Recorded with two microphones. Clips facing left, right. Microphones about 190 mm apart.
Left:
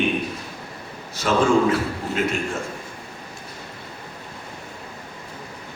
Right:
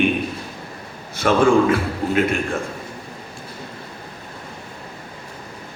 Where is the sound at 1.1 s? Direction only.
55° right (ahead or behind).